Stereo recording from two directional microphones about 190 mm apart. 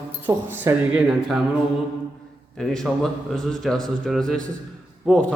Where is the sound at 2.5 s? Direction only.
Centre (ahead or behind).